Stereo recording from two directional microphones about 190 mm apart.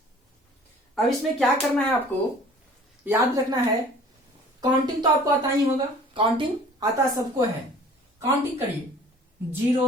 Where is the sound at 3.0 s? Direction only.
10° right (ahead or behind).